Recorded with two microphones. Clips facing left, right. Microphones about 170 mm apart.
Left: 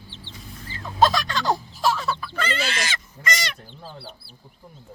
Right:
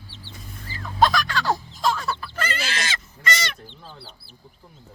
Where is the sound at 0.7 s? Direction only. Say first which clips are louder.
Even; 25° left (ahead or behind); by 2.1 s 5° left (ahead or behind).